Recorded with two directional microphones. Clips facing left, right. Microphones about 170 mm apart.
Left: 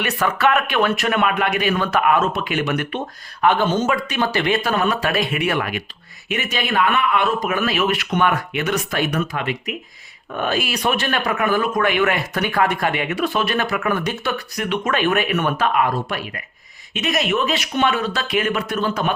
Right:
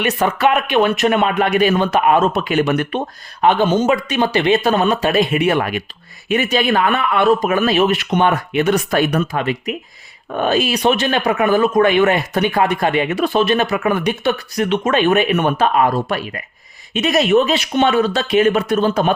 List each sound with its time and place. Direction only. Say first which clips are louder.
0.0 s speech: right 3 dB; 20° right (ahead or behind)
3.4 s speech: right 4 dB; 15° right (ahead or behind)
16.9 s speech: right 7 dB; 30° right (ahead or behind)